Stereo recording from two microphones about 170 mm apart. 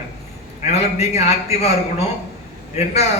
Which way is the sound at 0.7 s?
40° left (ahead or behind).